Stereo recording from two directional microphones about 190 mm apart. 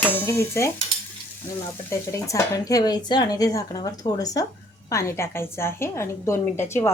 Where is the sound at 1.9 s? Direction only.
15° left (ahead or behind).